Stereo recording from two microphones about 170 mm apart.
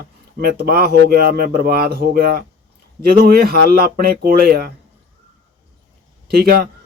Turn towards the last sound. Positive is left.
turn(degrees=-65)  # may be behind; listen again after turning